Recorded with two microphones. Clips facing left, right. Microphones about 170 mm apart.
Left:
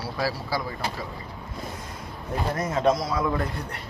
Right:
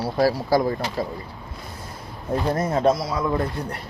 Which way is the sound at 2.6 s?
35° right (ahead or behind).